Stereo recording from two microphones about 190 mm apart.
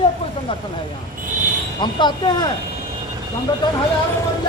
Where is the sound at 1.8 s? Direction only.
25° left (ahead or behind).